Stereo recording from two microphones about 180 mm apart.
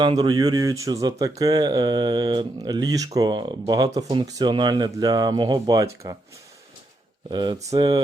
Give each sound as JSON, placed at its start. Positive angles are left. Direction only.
{"t": 0.0, "sound": "speech", "side_deg": -25}
{"t": 7.3, "sound": "speech", "side_deg": -25}